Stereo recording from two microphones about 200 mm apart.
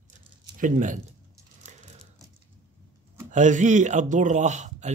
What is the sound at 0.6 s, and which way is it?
Speech, 40° right (ahead or behind).